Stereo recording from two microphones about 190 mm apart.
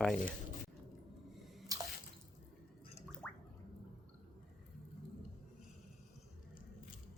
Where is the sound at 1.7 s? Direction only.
20° right (ahead or behind).